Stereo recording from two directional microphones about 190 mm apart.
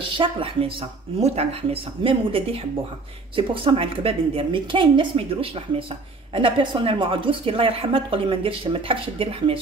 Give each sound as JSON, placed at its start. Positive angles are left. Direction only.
{"t": 0.0, "sound": "a woman's voice", "side_deg": -25}